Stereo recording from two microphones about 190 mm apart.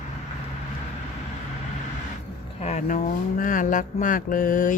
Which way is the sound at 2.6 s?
35° left (ahead or behind).